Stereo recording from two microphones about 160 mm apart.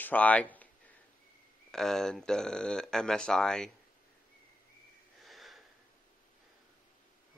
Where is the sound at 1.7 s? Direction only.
Centre (ahead or behind).